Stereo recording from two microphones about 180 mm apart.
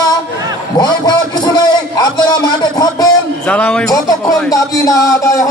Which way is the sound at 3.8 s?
20° left (ahead or behind).